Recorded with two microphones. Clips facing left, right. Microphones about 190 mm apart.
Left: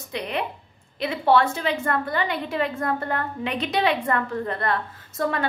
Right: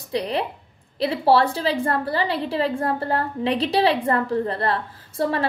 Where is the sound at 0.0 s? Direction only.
35° right (ahead or behind).